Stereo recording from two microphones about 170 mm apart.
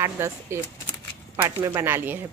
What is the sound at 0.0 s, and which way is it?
A woman's voice, 15° right (ahead or behind).